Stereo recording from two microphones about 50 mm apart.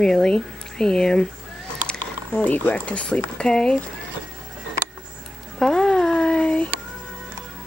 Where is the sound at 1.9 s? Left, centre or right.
Left.